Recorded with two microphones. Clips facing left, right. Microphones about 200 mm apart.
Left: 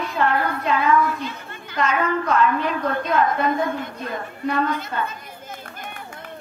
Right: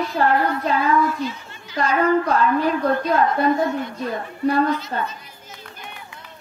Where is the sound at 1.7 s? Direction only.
35° right (ahead or behind).